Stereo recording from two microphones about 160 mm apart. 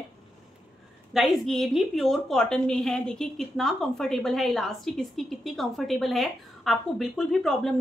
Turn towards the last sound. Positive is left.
turn(degrees=0)  # may be behind; listen again after turning